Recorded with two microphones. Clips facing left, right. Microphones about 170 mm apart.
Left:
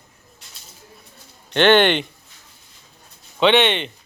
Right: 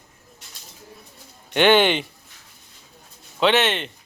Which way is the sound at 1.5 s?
10° right (ahead or behind).